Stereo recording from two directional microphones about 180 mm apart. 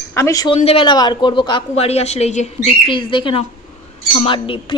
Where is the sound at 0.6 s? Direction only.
30° left (ahead or behind).